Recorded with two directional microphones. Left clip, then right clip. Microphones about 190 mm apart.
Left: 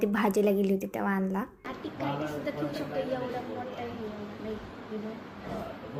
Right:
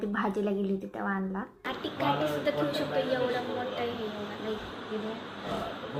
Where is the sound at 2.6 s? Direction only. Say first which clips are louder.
Right 4 dB; 30° right (ahead or behind).